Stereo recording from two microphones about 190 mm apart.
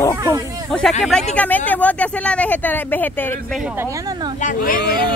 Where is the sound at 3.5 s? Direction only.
10° right (ahead or behind).